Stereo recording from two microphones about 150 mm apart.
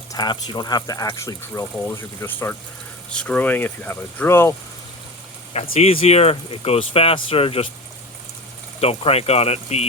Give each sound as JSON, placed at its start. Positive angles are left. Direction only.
{"t": 0.1, "sound": "speech", "side_deg": 30}
{"t": 5.8, "sound": "speech", "side_deg": 40}
{"t": 8.8, "sound": "speech", "side_deg": 40}